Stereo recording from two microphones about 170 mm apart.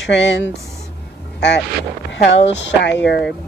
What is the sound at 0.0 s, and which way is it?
Speech, 90° left.